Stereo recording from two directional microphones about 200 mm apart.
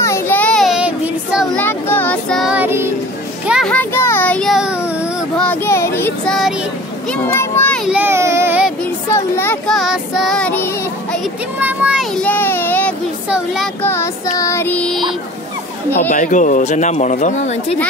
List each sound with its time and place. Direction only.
0.0 s child singing: 10° left (ahead or behind)
1.6 s child singing: 10° left (ahead or behind); by 2.9 s 10° right (ahead or behind)
3.4 s a sound: 5° right (ahead or behind)
3.7 s a sound: 10° left (ahead or behind)
5.4 s child singing: 10° left (ahead or behind)
7.1 s children playing: 10° left (ahead or behind)
7.9 s child singing: 10° right (ahead or behind)
9.1 s child singing: 10° left (ahead or behind)
11.6 s child singing: 5° right (ahead or behind)
12.2 s a sound: 10° left (ahead or behind)
13.3 s child singing: 5° right (ahead or behind)
13.8 s child singing: 15° left (ahead or behind)
16.1 s speech: 40° left (ahead or behind)